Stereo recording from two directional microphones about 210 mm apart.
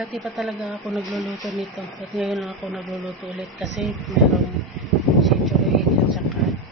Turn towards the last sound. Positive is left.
turn(degrees=0)  # may be behind; listen again after turning